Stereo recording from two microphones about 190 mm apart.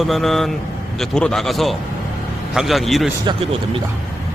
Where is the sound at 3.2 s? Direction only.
30° right (ahead or behind).